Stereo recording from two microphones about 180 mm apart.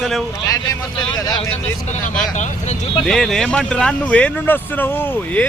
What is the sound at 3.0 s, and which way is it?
Speech, 5° left (ahead or behind).